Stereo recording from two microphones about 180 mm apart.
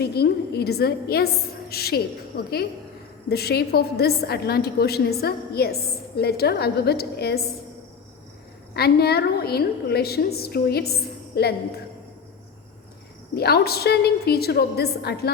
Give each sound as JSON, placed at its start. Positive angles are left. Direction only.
{"t": 0.0, "sound": "a woman's voice", "side_deg": 65}
{"t": 8.7, "sound": "a woman's voice", "side_deg": 60}
{"t": 13.3, "sound": "a woman's voice", "side_deg": 60}